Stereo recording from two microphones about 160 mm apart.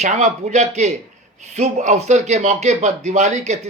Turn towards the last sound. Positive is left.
turn(degrees=-45)  # may be behind; listen again after turning